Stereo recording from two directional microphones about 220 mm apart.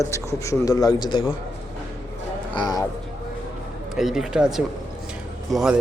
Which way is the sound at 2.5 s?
20° left (ahead or behind).